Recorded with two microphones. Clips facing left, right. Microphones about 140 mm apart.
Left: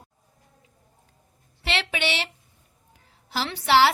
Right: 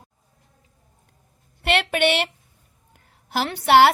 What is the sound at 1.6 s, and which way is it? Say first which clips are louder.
A woman's voice: right 7 dB; 55° right (ahead or behind).